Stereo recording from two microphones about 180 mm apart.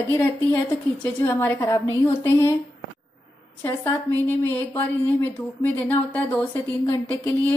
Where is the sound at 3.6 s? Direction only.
10° left (ahead or behind).